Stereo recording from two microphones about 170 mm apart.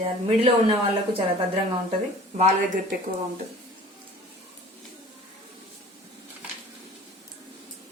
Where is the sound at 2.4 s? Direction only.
45° right (ahead or behind).